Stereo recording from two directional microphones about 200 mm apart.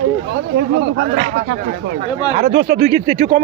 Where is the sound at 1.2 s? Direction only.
35° right (ahead or behind).